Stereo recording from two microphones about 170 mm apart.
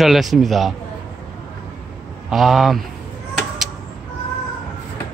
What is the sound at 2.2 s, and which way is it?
Speech, centre (ahead or behind).